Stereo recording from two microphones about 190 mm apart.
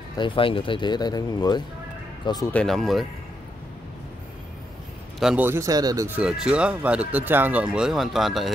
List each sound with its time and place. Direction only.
0.2 s speech: 25° left (ahead or behind)
2.5 s speech: centre (ahead or behind)
5.2 s speech: 5° right (ahead or behind)